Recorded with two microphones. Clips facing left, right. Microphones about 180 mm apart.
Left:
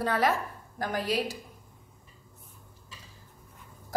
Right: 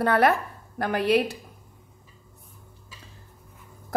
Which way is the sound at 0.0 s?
60° right (ahead or behind).